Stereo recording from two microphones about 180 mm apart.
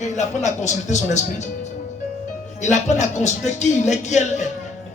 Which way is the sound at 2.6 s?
40° left (ahead or behind).